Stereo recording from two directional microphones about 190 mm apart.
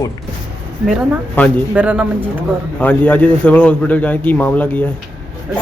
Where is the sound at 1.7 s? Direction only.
5° right (ahead or behind).